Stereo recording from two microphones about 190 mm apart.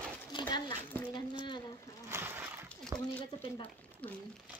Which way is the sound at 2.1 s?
10° right (ahead or behind).